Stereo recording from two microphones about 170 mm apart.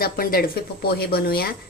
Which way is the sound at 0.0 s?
60° left (ahead or behind).